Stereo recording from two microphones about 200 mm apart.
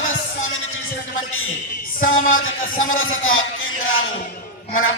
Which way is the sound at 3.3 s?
85° left.